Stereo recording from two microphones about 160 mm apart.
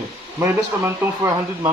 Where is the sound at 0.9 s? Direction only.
15° right (ahead or behind).